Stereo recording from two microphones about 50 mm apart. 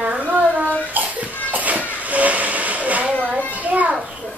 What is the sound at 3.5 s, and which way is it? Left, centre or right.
Children playing, right.